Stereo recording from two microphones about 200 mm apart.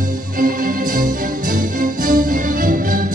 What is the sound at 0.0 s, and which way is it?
Music, 45° right (ahead or behind).